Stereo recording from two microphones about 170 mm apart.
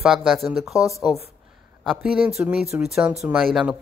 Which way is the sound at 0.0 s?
Centre (ahead or behind).